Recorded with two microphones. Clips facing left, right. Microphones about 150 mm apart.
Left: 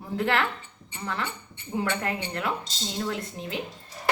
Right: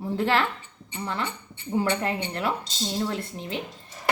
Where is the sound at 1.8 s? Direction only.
30° right (ahead or behind).